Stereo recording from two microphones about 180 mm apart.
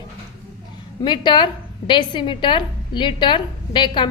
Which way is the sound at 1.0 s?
25° left (ahead or behind).